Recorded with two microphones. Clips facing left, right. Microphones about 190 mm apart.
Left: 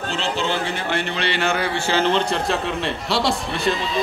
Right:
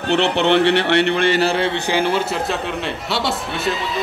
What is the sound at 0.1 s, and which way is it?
Speech, 65° right (ahead or behind).